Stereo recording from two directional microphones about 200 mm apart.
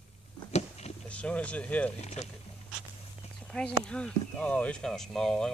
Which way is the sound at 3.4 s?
5° left (ahead or behind).